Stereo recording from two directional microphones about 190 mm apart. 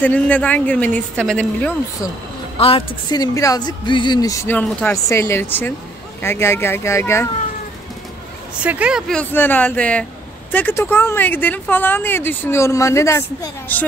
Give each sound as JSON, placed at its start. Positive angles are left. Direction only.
{"t": 0.0, "sound": "a woman's voice", "side_deg": 10}
{"t": 2.5, "sound": "a woman's voice", "side_deg": 30}
{"t": 8.6, "sound": "speech", "side_deg": -5}
{"t": 9.3, "sound": "a woman's voice", "side_deg": 10}